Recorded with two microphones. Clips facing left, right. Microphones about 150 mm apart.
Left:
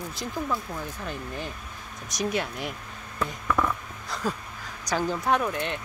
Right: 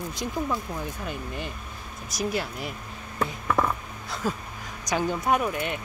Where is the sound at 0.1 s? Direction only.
15° right (ahead or behind).